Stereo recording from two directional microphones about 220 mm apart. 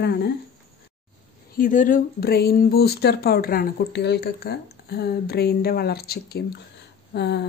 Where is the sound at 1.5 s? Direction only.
35° left (ahead or behind).